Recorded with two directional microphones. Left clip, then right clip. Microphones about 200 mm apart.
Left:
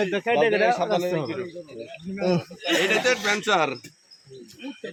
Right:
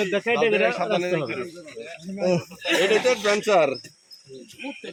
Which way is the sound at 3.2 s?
Centre (ahead or behind).